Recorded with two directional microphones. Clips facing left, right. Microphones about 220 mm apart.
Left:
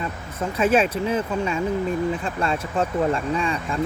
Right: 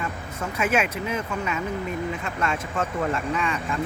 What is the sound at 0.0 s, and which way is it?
Speech, 30° left (ahead or behind).